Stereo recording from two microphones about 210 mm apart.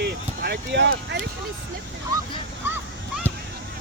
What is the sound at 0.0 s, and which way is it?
Speech, 50° right (ahead or behind).